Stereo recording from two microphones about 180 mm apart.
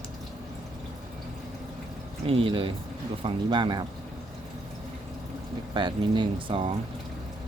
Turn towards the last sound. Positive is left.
turn(degrees=-30)  # may be behind; listen again after turning